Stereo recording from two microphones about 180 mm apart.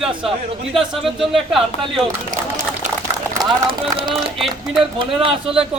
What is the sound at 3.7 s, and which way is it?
Speech, 30° right (ahead or behind).